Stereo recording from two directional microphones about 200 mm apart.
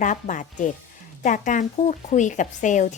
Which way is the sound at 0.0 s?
40° left (ahead or behind).